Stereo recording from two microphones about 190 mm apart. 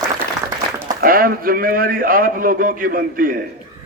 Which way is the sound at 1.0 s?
50° right (ahead or behind).